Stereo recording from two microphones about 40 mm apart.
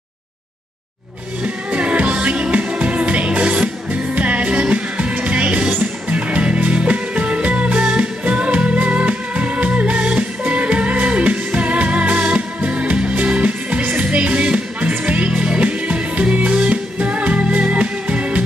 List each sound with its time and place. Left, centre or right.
1.4 s music: right